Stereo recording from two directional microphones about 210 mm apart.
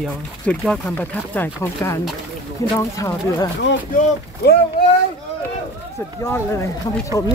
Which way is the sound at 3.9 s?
40° left (ahead or behind).